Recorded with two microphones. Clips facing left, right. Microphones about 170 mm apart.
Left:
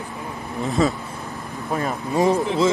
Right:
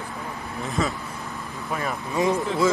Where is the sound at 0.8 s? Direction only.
35° left (ahead or behind).